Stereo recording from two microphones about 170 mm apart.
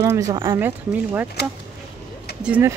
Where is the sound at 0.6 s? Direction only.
10° right (ahead or behind).